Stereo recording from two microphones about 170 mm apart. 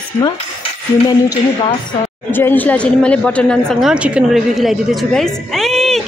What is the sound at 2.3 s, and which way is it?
A woman's voice, 10° left (ahead or behind).